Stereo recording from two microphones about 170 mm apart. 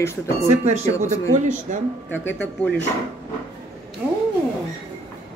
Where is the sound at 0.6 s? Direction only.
40° right (ahead or behind).